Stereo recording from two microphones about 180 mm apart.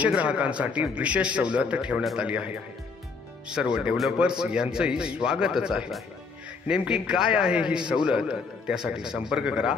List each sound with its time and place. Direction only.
0.0 s a man's voice: 5° right (ahead or behind)